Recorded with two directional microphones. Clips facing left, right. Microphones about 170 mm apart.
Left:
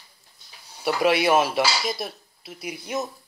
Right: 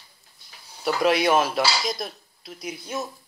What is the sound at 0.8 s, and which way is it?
Speech, 5° left (ahead or behind).